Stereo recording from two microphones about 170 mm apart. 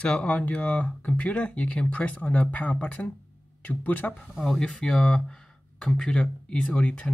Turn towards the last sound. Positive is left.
turn(degrees=5)  # may be behind; listen again after turning